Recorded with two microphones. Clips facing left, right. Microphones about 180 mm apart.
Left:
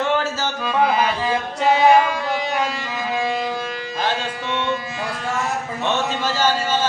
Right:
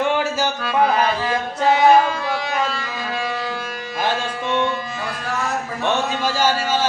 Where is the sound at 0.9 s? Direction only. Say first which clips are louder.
Even; 15° left (ahead or behind).